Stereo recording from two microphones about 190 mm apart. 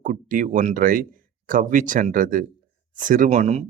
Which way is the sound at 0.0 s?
45° right (ahead or behind).